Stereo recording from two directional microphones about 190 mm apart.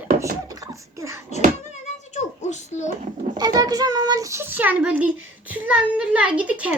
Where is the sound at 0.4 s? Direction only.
20° right (ahead or behind).